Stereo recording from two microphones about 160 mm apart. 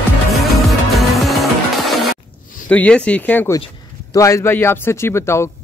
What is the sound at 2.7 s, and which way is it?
Speech, 10° left (ahead or behind).